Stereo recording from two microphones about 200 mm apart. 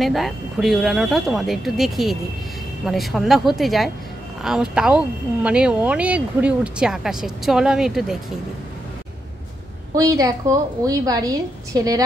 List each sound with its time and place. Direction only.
0.0 s speech: centre (ahead or behind)
9.9 s a woman's voice: 20° right (ahead or behind)